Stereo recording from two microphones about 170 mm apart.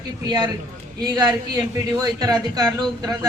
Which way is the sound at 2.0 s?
20° right (ahead or behind).